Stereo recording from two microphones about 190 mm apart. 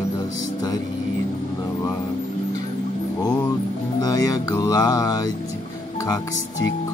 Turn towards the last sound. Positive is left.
turn(degrees=20)  # may be behind; listen again after turning